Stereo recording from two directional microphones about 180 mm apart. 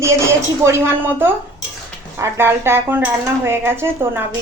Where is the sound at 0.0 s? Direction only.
15° right (ahead or behind).